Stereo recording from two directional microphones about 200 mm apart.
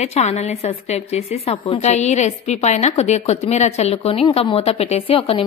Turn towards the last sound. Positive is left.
turn(degrees=30)  # may be behind; listen again after turning